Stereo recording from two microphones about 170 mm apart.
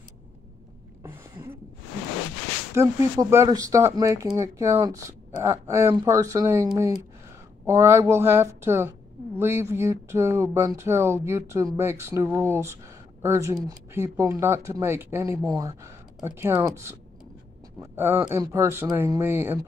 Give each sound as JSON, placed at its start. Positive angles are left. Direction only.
{"t": 2.7, "sound": "speech", "side_deg": -15}